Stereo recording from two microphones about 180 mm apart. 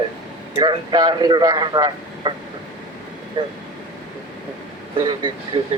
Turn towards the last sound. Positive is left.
turn(degrees=-25)  # may be behind; listen again after turning